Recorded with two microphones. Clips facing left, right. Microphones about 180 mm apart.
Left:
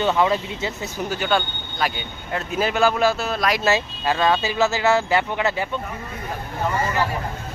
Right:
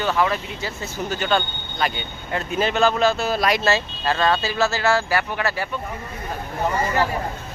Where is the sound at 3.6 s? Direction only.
15° left (ahead or behind).